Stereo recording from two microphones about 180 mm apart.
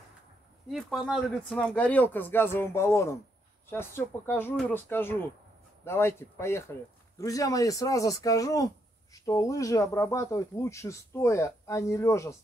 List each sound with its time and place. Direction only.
0.7 s speech: centre (ahead or behind); by 12.4 s 15° left (ahead or behind)